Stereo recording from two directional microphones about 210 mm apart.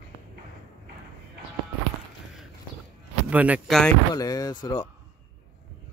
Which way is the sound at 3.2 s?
5° right (ahead or behind).